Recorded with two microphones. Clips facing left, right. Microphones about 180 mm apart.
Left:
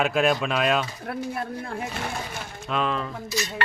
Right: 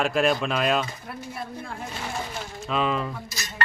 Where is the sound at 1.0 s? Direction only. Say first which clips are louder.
Left 6 dB; 65° left (ahead or behind).